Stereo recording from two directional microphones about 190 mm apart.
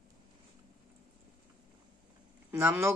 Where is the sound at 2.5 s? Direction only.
10° right (ahead or behind).